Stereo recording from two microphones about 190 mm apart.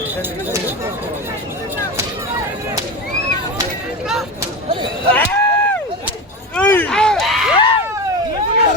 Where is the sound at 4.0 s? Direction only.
5° right (ahead or behind).